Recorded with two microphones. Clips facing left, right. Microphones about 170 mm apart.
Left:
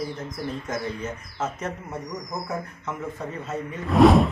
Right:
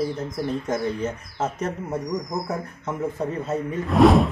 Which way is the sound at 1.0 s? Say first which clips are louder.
Right 4 dB; 35° right (ahead or behind).